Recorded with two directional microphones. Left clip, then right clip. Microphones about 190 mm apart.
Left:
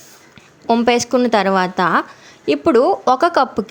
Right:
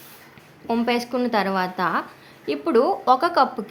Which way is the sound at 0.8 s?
40° left (ahead or behind).